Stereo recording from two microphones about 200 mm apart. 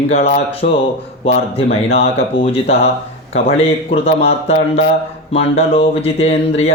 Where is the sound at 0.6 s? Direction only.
45° left (ahead or behind).